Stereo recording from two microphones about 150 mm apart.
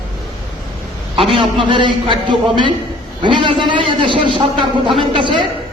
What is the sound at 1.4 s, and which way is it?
A man's voice, 35° right (ahead or behind).